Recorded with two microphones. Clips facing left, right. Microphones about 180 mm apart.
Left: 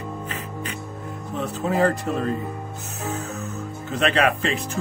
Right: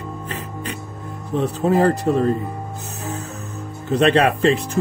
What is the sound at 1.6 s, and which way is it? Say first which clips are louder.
Music: right 4 dB; 40° right (ahead or behind).